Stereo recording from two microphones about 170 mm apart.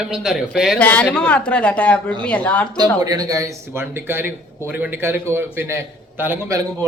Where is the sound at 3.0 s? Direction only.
20° right (ahead or behind).